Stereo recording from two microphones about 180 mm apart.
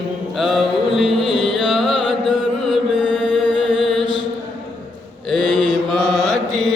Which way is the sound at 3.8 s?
Centre (ahead or behind).